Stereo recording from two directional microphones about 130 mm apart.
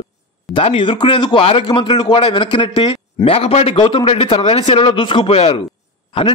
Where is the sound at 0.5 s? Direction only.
40° left (ahead or behind).